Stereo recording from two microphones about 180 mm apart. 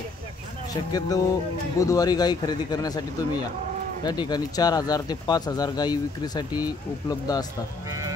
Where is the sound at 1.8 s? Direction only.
20° left (ahead or behind).